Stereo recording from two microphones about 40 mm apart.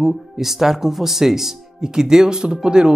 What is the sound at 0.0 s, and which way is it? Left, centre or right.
Speech, centre.